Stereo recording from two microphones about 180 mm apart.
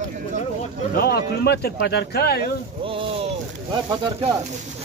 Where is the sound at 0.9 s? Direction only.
60° left (ahead or behind).